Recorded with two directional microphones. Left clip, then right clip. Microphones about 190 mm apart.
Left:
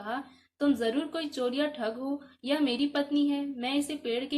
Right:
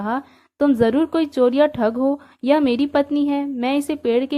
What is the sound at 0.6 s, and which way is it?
A woman's voice, 45° right (ahead or behind).